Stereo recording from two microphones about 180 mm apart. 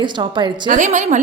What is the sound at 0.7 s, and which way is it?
Speech, 45° right (ahead or behind).